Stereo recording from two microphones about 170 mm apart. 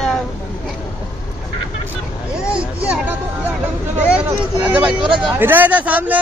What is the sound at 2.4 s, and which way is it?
Speech, 5° right (ahead or behind).